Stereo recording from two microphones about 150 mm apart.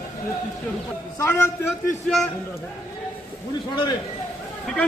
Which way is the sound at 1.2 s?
20° left (ahead or behind).